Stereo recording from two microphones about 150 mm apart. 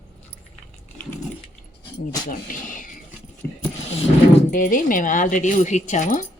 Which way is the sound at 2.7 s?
60° left (ahead or behind).